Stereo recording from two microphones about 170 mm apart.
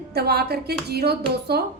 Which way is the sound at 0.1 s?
70° right (ahead or behind).